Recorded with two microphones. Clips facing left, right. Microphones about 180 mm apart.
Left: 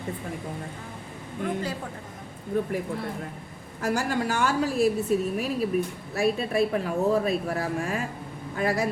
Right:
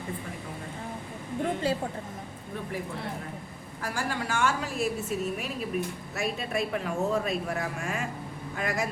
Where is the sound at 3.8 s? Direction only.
45° left (ahead or behind).